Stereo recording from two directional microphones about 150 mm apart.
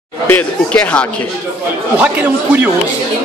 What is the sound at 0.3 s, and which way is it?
Speech, 10° left (ahead or behind).